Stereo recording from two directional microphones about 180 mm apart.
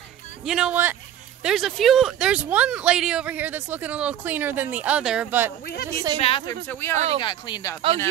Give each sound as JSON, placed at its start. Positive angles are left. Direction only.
{"t": 0.5, "sound": "speech", "side_deg": -5}
{"t": 5.7, "sound": "a woman's voice", "side_deg": 60}
{"t": 6.2, "sound": "speech", "side_deg": 30}
{"t": 6.7, "sound": "speech", "side_deg": 15}
{"t": 7.2, "sound": "speech", "side_deg": 25}